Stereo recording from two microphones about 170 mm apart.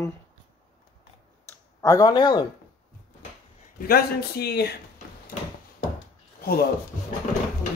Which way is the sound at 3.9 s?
70° left (ahead or behind).